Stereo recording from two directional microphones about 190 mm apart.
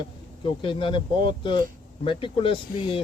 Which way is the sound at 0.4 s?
25° left (ahead or behind).